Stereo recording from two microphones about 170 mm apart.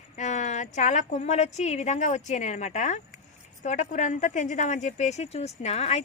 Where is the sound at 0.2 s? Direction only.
45° left (ahead or behind).